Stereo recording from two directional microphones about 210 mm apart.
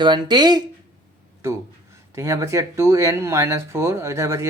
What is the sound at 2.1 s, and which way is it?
Speech, 15° right (ahead or behind).